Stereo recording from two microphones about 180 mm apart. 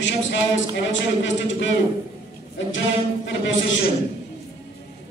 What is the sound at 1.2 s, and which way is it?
Speech, 90° left.